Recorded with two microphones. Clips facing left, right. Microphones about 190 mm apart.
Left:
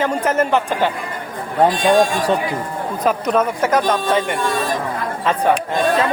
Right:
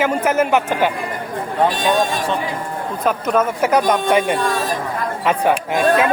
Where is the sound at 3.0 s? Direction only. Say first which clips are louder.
Even; centre (ahead or behind).